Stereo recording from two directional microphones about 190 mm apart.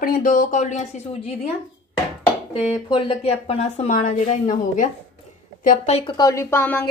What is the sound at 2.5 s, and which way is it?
A woman's voice, 30° left (ahead or behind).